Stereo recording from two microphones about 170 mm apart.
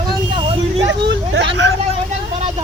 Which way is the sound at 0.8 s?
90° right.